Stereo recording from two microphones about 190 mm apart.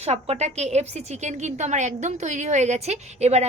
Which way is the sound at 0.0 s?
35° right (ahead or behind).